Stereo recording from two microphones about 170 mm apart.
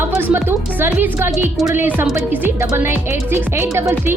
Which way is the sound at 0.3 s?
10° right (ahead or behind).